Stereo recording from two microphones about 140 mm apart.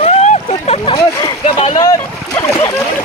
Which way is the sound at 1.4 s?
45° left (ahead or behind).